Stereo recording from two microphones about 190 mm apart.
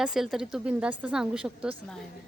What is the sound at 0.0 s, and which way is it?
Speech, 5° right (ahead or behind).